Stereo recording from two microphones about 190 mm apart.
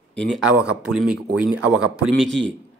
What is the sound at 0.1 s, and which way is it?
Speech, centre (ahead or behind).